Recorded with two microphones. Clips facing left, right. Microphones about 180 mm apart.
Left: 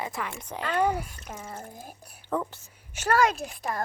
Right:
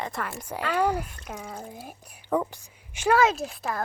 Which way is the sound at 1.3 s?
5° left (ahead or behind).